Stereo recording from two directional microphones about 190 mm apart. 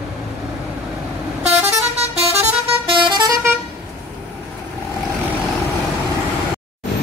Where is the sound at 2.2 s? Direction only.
35° right (ahead or behind).